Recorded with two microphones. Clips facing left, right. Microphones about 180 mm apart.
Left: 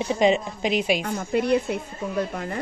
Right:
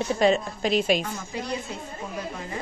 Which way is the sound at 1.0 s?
60° left (ahead or behind).